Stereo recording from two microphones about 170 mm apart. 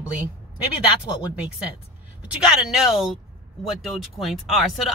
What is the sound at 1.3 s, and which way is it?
Speech, 5° right (ahead or behind).